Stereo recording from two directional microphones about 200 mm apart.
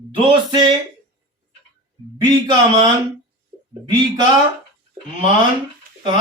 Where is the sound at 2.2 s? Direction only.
25° right (ahead or behind).